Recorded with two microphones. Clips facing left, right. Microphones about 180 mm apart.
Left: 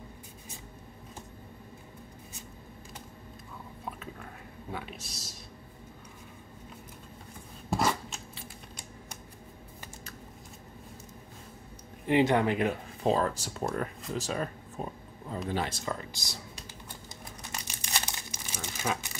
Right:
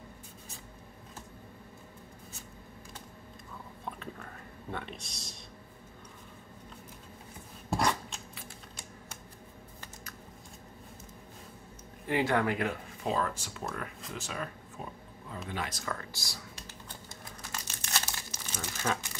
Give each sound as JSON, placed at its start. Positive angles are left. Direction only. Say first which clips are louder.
{"t": 3.8, "sound": "a sound", "louder": "even", "side_deg": 5}
{"t": 7.7, "sound": "scissors", "louder": "left 1 dB", "side_deg": 5}
{"t": 12.1, "sound": "speech", "louder": "left 4 dB", "side_deg": 20}
{"t": 13.0, "sound": "speech", "louder": "left 5 dB", "side_deg": 35}
{"t": 15.8, "sound": "speech", "louder": "left 3 dB", "side_deg": 20}
{"t": 17.1, "sound": "crumpling", "louder": "left 1 dB", "side_deg": 15}